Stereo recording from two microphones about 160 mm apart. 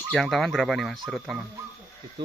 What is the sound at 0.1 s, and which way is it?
Speech, centre (ahead or behind).